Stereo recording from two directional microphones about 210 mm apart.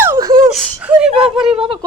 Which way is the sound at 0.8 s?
5° right (ahead or behind).